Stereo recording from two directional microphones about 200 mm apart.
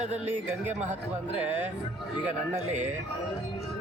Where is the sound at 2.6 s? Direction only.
35° right (ahead or behind).